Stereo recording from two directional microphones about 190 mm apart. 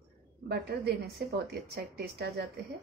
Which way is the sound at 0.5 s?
55° right (ahead or behind).